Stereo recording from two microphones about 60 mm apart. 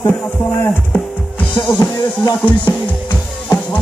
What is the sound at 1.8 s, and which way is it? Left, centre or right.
Music, left.